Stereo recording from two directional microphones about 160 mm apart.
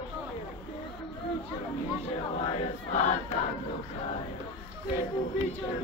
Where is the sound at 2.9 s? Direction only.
45° left (ahead or behind).